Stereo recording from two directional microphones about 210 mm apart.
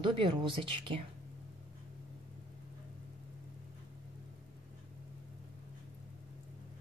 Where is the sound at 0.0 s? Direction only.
25° right (ahead or behind).